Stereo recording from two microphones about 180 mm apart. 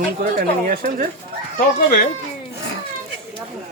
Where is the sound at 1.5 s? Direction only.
55° left (ahead or behind).